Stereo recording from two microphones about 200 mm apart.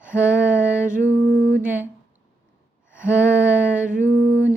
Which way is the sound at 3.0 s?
5° right (ahead or behind).